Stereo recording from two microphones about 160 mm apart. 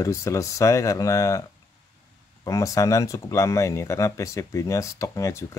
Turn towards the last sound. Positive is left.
turn(degrees=20)  # may be behind; listen again after turning